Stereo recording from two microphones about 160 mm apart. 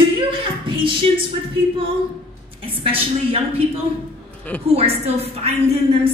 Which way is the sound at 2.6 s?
35° right (ahead or behind).